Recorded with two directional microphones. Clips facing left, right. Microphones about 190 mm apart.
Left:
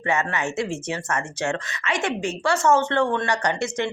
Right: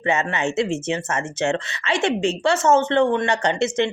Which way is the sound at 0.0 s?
25° right (ahead or behind).